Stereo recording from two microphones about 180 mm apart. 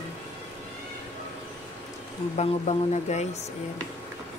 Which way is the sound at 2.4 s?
40° left (ahead or behind).